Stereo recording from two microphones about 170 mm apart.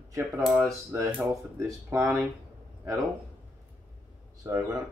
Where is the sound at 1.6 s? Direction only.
15° right (ahead or behind).